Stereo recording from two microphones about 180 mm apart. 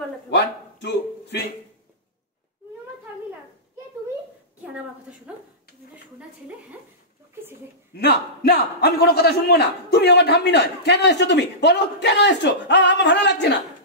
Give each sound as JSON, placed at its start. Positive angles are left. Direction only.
{"t": 0.3, "sound": "a sound", "side_deg": 70}
{"t": 5.1, "sound": "speech", "side_deg": -5}
{"t": 7.9, "sound": "a man's voice", "side_deg": 65}